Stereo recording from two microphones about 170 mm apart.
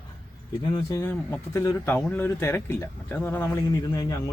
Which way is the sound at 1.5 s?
20° left (ahead or behind).